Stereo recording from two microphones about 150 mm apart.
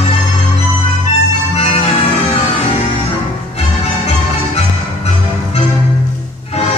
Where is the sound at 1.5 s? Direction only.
45° left (ahead or behind).